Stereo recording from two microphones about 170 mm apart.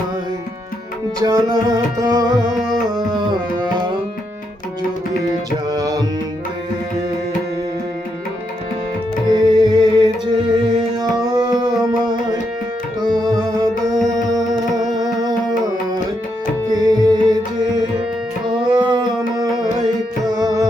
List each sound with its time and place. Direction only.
1.2 s music: 20° right (ahead or behind)
2.9 s tabla: 25° right (ahead or behind)
5.7 s music: 25° right (ahead or behind)
9.3 s music: 25° right (ahead or behind)
16.7 s music: 25° right (ahead or behind)